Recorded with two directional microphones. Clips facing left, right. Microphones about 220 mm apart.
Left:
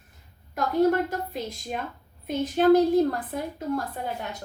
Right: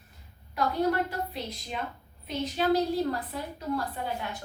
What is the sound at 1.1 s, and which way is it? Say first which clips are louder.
A woman's voice: left 3 dB; 45° left (ahead or behind).